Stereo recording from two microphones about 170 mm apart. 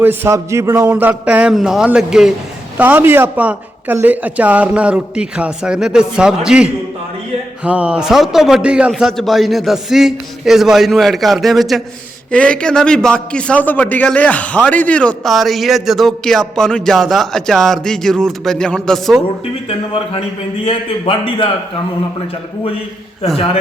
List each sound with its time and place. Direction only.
0.0 s a woman's voice: 10° right (ahead or behind)
20.7 s a man's voice: 30° left (ahead or behind)